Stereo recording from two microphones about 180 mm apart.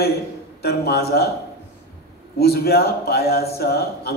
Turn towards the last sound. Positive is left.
turn(degrees=60)  # may be behind; listen again after turning